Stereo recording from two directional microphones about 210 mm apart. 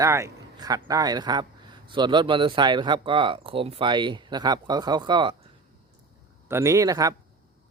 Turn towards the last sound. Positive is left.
turn(degrees=-15)  # may be behind; listen again after turning